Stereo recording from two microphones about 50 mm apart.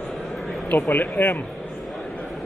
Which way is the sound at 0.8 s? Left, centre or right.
Left.